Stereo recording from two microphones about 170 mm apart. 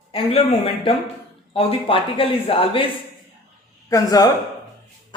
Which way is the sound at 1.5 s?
35° left (ahead or behind).